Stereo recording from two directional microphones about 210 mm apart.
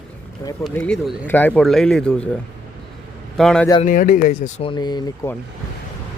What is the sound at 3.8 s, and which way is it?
Speech, 40° left (ahead or behind).